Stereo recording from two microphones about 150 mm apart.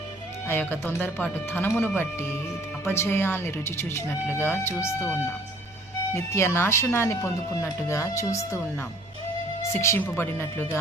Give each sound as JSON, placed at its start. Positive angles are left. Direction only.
{"t": 0.4, "sound": "speech", "side_deg": 15}
{"t": 9.7, "sound": "speech", "side_deg": 15}